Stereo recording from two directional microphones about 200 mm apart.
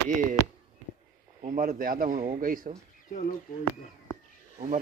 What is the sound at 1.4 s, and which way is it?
Speech, 40° right (ahead or behind).